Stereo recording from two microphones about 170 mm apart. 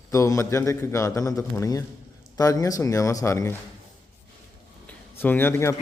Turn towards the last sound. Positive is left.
turn(degrees=15)  # may be behind; listen again after turning